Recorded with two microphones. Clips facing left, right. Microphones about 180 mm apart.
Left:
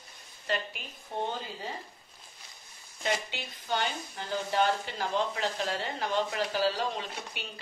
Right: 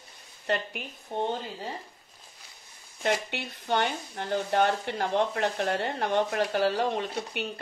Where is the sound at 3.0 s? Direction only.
60° right (ahead or behind).